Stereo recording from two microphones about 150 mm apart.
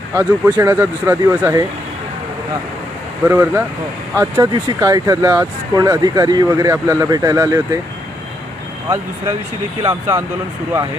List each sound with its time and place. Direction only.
0.1 s speech: 15° right (ahead or behind)
3.2 s speech: 15° right (ahead or behind)
9.8 s speech: 20° right (ahead or behind)